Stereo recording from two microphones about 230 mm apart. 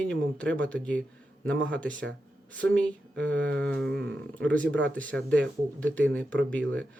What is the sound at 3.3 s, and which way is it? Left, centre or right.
Speech, right.